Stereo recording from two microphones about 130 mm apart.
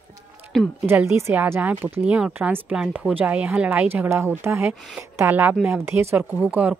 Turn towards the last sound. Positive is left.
turn(degrees=-10)  # may be behind; listen again after turning